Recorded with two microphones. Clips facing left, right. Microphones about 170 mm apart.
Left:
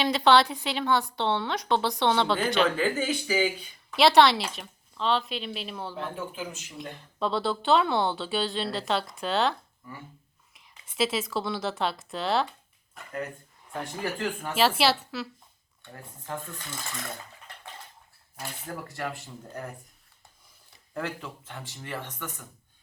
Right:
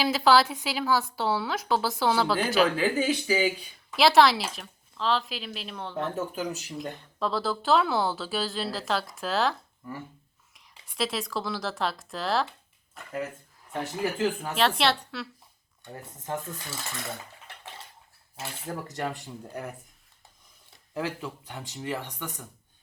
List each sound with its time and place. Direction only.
0.0 s speech: 5° right (ahead or behind)
6.1 s speech: 40° right (ahead or behind)
6.7 s speech: centre (ahead or behind)
15.8 s speech: 20° right (ahead or behind)
18.9 s speech: 20° right (ahead or behind)
20.9 s speech: 10° right (ahead or behind)